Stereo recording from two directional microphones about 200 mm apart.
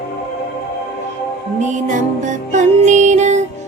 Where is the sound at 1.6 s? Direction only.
40° right (ahead or behind).